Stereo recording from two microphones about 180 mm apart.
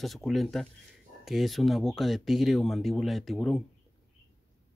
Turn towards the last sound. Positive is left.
turn(degrees=0)  # may be behind; listen again after turning